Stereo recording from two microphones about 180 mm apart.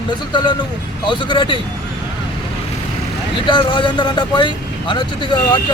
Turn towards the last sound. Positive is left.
turn(degrees=25)  # may be behind; listen again after turning